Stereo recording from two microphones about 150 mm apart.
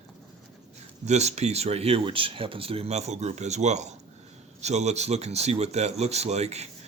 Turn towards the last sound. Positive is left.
turn(degrees=-45)  # may be behind; listen again after turning